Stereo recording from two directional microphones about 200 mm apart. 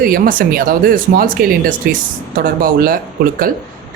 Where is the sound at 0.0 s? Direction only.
45° right (ahead or behind).